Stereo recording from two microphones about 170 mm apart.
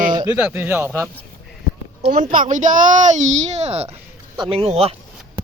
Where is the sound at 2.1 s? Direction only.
50° right (ahead or behind); by 4.9 s 35° right (ahead or behind).